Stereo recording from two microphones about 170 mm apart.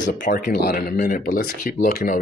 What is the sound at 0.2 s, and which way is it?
Speech, 65° left (ahead or behind).